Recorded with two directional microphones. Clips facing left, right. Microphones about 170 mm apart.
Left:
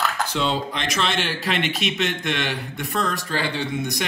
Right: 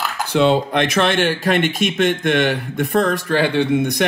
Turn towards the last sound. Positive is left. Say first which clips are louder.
# right 9 dB
turn(degrees=-55)  # may be behind; listen again after turning